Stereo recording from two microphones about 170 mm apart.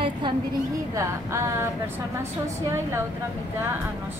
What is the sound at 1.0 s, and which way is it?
Speech, 15° right (ahead or behind).